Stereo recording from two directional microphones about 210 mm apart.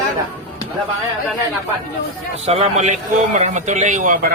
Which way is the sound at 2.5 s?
30° right (ahead or behind).